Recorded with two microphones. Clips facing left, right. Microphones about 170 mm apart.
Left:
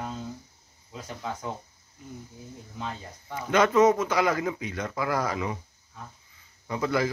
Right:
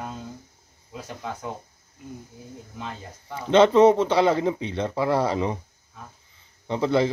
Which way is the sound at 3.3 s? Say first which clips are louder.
Right 5 dB; 30° right (ahead or behind).